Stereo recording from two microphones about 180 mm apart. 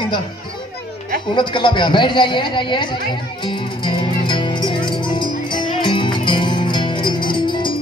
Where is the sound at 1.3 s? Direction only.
25° left (ahead or behind).